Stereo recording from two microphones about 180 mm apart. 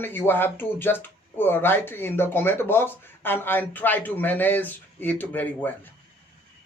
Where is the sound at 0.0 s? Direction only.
10° left (ahead or behind).